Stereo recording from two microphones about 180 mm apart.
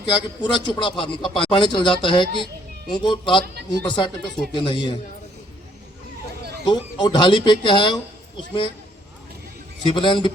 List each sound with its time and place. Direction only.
0.2 s a man's voice: 25° left (ahead or behind)
6.7 s a man's voice: 25° left (ahead or behind)
9.8 s a man's voice: 25° left (ahead or behind)